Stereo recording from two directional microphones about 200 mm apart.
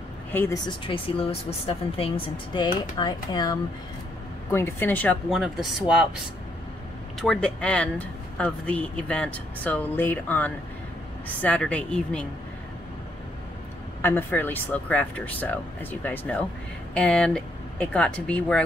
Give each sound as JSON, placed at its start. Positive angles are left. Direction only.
{"t": 0.3, "sound": "speech", "side_deg": 10}
{"t": 0.8, "sound": "a woman's voice", "side_deg": 25}
{"t": 7.2, "sound": "speech", "side_deg": 5}
{"t": 14.0, "sound": "speech", "side_deg": 10}